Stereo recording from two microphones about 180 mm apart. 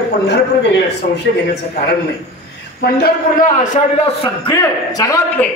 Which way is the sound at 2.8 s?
55° left (ahead or behind).